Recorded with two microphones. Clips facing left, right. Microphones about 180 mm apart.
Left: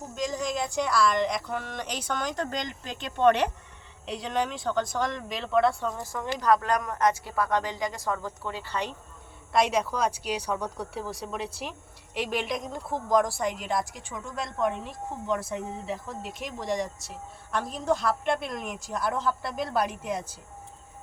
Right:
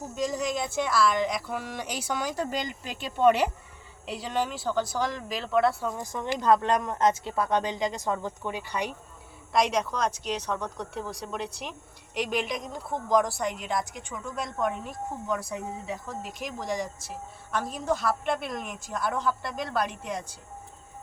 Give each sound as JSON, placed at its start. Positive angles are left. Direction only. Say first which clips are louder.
{"t": 0.2, "sound": "a woman's voice", "louder": "right 1 dB", "side_deg": -5}
{"t": 6.0, "sound": "speech", "louder": "right 1 dB", "side_deg": -20}
{"t": 9.5, "sound": "speech", "louder": "left 1 dB", "side_deg": 0}